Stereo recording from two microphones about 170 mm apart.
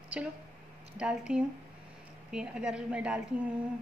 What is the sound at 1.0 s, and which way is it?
A woman's voice, 5° right (ahead or behind).